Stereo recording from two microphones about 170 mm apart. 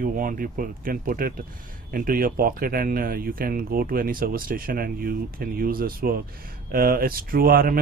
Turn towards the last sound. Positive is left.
turn(degrees=-60)  # may be behind; listen again after turning